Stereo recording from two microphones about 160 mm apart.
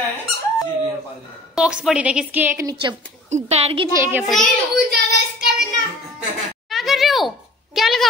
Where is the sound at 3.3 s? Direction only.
45° right (ahead or behind).